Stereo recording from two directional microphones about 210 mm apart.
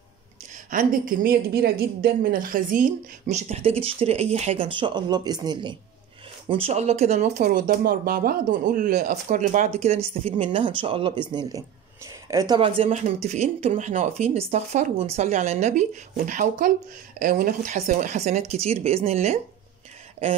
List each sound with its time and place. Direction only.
0.7 s speech: 40° right (ahead or behind)
7.4 s a woman's voice: 45° right (ahead or behind)
17.7 s speech: 35° right (ahead or behind)